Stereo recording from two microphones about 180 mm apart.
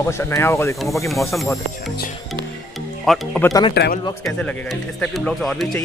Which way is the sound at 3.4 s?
20° left (ahead or behind).